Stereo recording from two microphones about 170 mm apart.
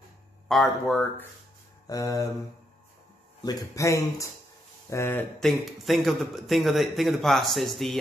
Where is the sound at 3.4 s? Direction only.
20° left (ahead or behind).